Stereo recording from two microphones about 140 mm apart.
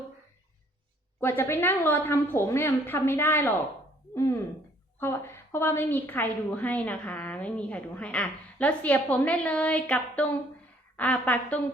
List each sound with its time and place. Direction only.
1.2 s a woman's voice: 15° left (ahead or behind)